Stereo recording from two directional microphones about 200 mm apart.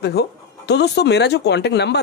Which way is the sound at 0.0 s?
55° left (ahead or behind).